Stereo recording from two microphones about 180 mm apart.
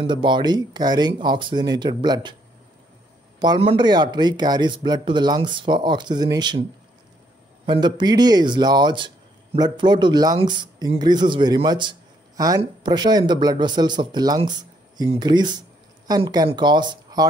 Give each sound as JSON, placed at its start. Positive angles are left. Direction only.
{"t": 0.0, "sound": "speech", "side_deg": -25}
{"t": 3.3, "sound": "speech", "side_deg": -25}
{"t": 7.6, "sound": "speech", "side_deg": -25}